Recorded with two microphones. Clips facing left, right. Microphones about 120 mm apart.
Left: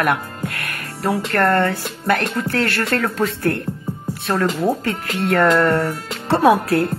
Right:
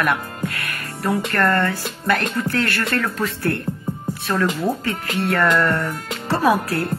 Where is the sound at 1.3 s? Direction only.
60° left (ahead or behind).